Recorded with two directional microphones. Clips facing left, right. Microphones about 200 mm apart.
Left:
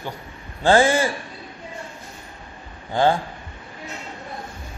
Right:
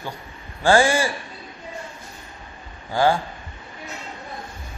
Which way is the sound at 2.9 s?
20° left (ahead or behind).